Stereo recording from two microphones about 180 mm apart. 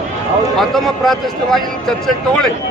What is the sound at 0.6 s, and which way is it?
A man's voice, centre (ahead or behind).